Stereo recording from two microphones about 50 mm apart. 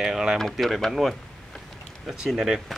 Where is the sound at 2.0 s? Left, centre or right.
Centre.